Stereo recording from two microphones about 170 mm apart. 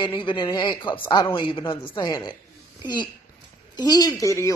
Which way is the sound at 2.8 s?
25° left (ahead or behind).